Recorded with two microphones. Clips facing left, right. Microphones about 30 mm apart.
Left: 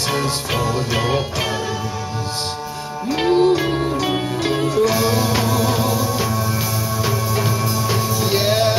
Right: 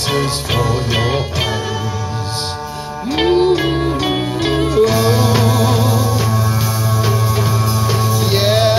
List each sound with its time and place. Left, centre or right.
0.1 s music: centre
3.1 s music: right
5.4 s music: right
5.7 s music: centre
8.0 s music: centre
8.4 s music: right